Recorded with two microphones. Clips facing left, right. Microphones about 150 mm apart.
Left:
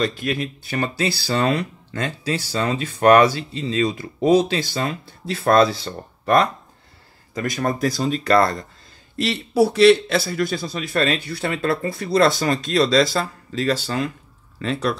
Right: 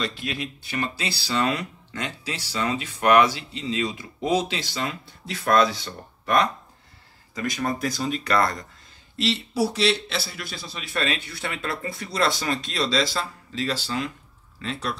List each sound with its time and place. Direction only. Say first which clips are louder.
0.0 s speech: left 7 dB; 50° left (ahead or behind); by 8.6 s 30° left (ahead or behind)
9.2 s a man's voice: left 6 dB; 55° left (ahead or behind)
14.6 s speech: left 7 dB; 55° left (ahead or behind)